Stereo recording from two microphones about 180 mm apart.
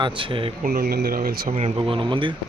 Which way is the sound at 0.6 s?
55° right (ahead or behind).